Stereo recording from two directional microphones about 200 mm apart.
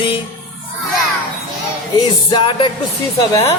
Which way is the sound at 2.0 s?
25° left (ahead or behind).